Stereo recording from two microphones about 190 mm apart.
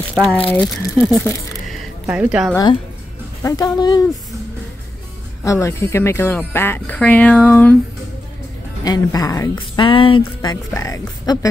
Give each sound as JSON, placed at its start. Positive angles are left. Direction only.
{"t": 0.2, "sound": "speech", "side_deg": -5}
{"t": 1.7, "sound": "a sound", "side_deg": -5}
{"t": 2.5, "sound": "speech", "side_deg": 20}
{"t": 5.4, "sound": "speech", "side_deg": 15}
{"t": 8.8, "sound": "speech", "side_deg": 20}